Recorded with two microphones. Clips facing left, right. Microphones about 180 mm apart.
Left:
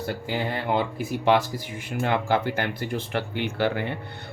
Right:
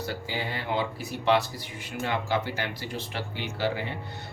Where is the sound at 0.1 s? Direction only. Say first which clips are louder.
Left 5 dB; 55° left (ahead or behind).